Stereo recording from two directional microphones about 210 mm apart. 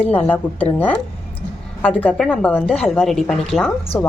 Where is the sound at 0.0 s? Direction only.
10° left (ahead or behind).